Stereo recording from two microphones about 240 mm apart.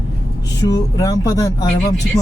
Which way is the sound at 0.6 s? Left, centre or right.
Centre.